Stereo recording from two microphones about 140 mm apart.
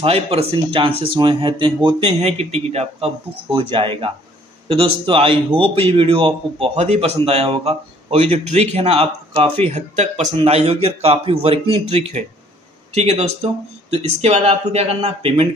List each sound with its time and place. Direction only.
0.0 s a man's voice: 45° right (ahead or behind)